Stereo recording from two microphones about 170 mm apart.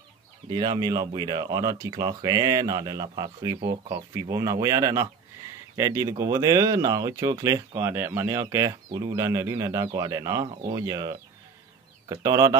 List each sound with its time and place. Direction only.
0.5 s speech: 25° right (ahead or behind)